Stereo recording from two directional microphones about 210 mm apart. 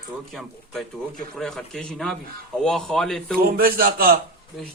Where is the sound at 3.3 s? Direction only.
45° right (ahead or behind).